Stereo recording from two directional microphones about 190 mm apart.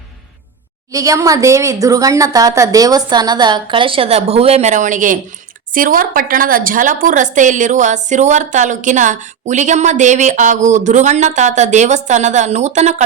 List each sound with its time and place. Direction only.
0.9 s a woman's voice: 15° right (ahead or behind); by 13.1 s 35° right (ahead or behind)